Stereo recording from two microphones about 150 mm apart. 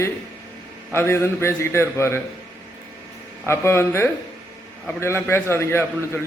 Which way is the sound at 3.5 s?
15° left (ahead or behind).